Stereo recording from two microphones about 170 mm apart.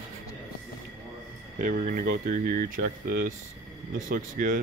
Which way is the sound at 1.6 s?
55° right (ahead or behind).